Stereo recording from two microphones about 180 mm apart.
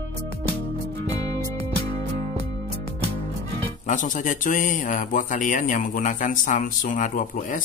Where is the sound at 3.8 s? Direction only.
45° left (ahead or behind).